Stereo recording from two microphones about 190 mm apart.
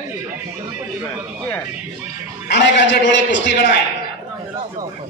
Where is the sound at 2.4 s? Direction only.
65° left (ahead or behind).